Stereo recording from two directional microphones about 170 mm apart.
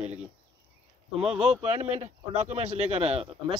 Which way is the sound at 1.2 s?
Centre (ahead or behind).